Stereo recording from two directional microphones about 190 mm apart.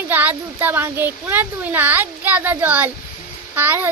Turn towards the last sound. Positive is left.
turn(degrees=-10)  # may be behind; listen again after turning